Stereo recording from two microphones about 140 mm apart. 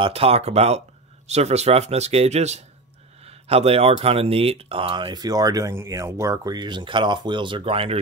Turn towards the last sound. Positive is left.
turn(degrees=-40)  # may be behind; listen again after turning